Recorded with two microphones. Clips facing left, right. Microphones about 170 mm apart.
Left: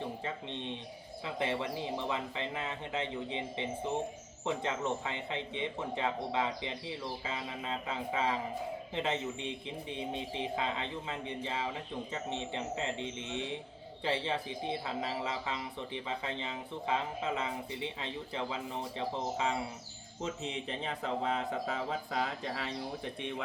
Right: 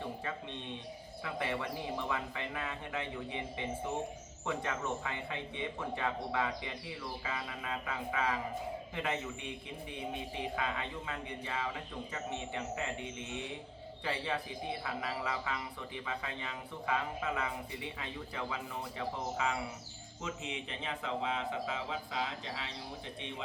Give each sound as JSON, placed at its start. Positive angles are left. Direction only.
{"t": 1.2, "sound": "a man's voice", "side_deg": 20}